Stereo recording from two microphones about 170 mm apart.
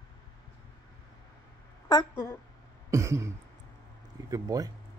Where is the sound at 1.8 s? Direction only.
20° left (ahead or behind).